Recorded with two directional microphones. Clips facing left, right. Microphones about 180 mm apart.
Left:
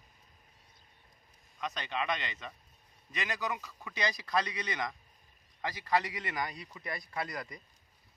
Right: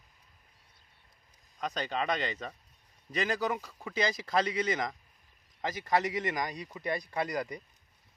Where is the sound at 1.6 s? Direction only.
40° right (ahead or behind).